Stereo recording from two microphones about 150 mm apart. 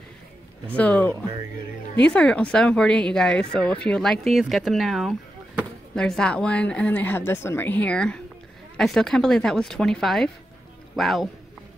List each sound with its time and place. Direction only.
0.7 s a woman's voice: 10° left (ahead or behind)